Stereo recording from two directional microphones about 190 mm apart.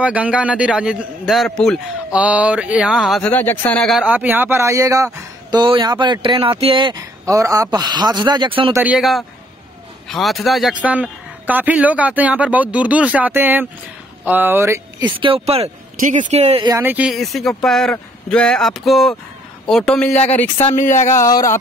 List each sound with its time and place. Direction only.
0.0 s a man's voice: 5° right (ahead or behind); by 8.7 s 25° right (ahead or behind)
8.7 s a man's voice: 5° right (ahead or behind)
15.1 s speech: 30° right (ahead or behind)
16.6 s speech: 15° right (ahead or behind)
16.9 s a man's voice: 5° right (ahead or behind)
20.7 s speech: 40° left (ahead or behind)
21.2 s speech: 15° left (ahead or behind)